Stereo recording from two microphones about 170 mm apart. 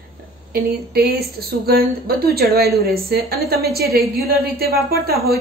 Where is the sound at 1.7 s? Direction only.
65° right (ahead or behind).